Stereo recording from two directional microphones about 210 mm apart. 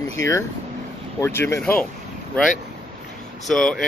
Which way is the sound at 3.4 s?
Centre (ahead or behind).